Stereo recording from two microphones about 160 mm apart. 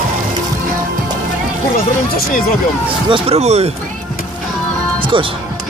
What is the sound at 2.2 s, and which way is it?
Speech, 65° left (ahead or behind).